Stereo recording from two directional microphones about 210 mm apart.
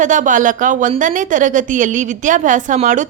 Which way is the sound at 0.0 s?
35° right (ahead or behind).